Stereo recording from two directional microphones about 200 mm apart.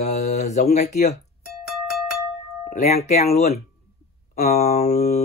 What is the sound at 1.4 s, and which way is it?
Music, centre (ahead or behind).